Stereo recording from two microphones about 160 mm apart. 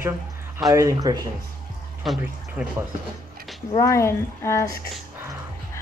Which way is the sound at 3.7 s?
20° left (ahead or behind).